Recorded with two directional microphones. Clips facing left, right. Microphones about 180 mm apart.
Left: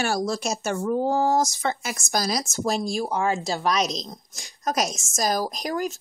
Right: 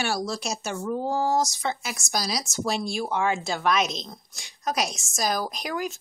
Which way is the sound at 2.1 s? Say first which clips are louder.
Left 4 dB; 50° left (ahead or behind).